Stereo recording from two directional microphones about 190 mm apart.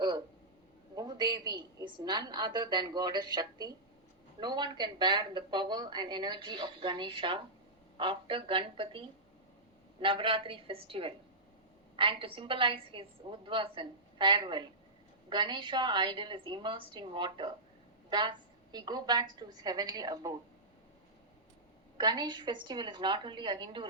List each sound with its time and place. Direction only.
0.9 s a woman's voice: 20° right (ahead or behind)
21.9 s a woman's voice: 20° right (ahead or behind)